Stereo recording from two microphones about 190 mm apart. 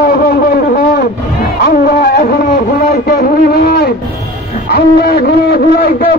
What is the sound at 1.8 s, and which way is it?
A man's voice, 50° left (ahead or behind).